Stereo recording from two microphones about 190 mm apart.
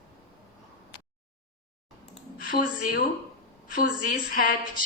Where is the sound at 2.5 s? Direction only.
50° left (ahead or behind).